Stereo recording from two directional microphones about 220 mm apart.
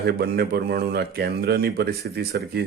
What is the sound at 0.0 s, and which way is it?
Speech, 45° right (ahead or behind).